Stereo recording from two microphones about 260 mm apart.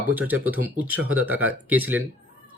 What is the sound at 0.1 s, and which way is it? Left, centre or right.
Speech, centre.